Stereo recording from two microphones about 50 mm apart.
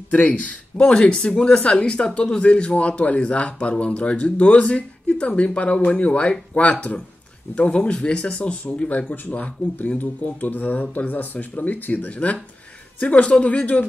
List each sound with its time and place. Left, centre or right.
0.1 s speech: left